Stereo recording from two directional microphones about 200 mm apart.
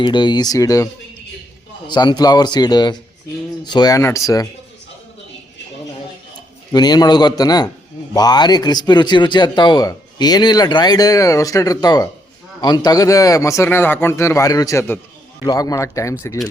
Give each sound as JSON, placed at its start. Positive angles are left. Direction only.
{"t": 0.0, "sound": "speech", "side_deg": 20}
{"t": 1.9, "sound": "speech", "side_deg": 20}
{"t": 6.7, "sound": "speech", "side_deg": 20}